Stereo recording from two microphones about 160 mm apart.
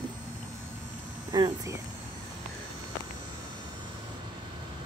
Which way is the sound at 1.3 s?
25° right (ahead or behind).